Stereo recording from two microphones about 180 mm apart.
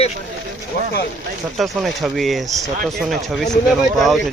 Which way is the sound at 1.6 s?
Centre (ahead or behind).